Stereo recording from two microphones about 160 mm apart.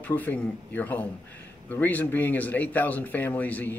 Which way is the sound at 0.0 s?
10° left (ahead or behind).